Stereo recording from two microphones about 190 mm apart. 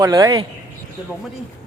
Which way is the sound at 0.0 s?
20° right (ahead or behind).